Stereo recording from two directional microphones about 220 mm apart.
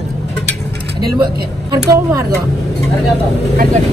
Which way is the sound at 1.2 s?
15° right (ahead or behind).